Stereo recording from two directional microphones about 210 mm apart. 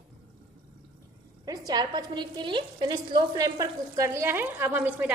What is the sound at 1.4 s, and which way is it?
A woman's voice, 20° right (ahead or behind).